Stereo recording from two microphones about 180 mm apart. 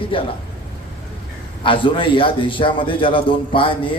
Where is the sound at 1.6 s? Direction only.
30° left (ahead or behind).